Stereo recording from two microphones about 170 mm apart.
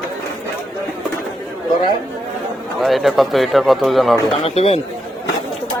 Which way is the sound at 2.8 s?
Centre (ahead or behind).